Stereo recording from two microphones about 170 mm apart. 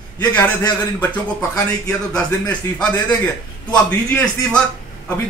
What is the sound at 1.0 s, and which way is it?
A man's voice, 5° left (ahead or behind).